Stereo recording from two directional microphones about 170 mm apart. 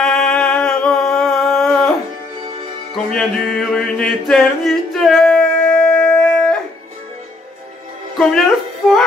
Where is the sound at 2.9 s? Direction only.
Centre (ahead or behind).